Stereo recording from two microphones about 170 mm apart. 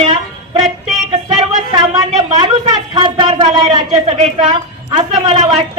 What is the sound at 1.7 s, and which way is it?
A woman's voice, 25° right (ahead or behind).